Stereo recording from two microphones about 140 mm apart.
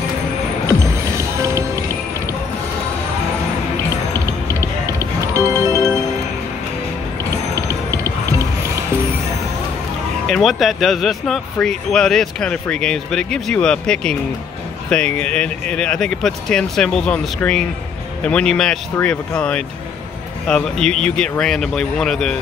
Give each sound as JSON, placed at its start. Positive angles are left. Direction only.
{"t": 1.1, "sound": "music", "side_deg": -20}
{"t": 4.5, "sound": "music", "side_deg": -20}
{"t": 7.5, "sound": "music", "side_deg": -20}
{"t": 10.2, "sound": "speech", "side_deg": 0}